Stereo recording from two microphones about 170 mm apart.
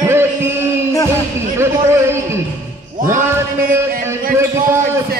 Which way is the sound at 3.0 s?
50° right (ahead or behind).